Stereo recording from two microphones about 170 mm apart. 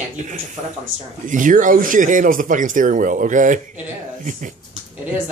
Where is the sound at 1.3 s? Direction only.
50° right (ahead or behind).